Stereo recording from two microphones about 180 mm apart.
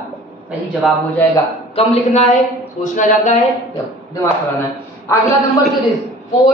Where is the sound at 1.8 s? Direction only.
30° left (ahead or behind).